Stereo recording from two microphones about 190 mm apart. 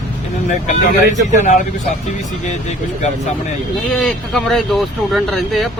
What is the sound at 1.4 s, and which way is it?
Speech, 40° left (ahead or behind).